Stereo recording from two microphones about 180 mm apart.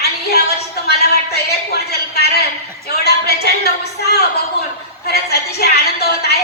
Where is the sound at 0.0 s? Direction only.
65° left (ahead or behind).